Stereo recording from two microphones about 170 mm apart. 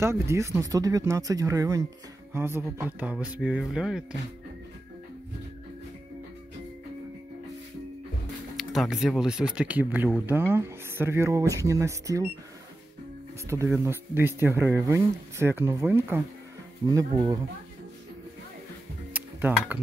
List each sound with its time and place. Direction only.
0.0 s speech: 15° right (ahead or behind)
8.5 s speech: centre (ahead or behind); by 12.3 s 20° right (ahead or behind)
13.5 s speech: 15° right (ahead or behind)
19.1 s music: 10° right (ahead or behind)